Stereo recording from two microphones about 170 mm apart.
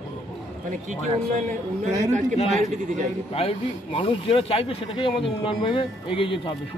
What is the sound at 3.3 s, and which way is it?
Speech, 35° left (ahead or behind).